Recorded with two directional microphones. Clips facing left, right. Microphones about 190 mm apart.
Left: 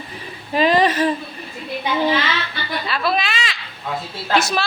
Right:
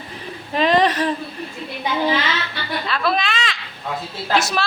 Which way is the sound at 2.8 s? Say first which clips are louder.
Even; 5° left (ahead or behind).